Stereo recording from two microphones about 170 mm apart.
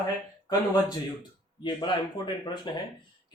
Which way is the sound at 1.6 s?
25° left (ahead or behind).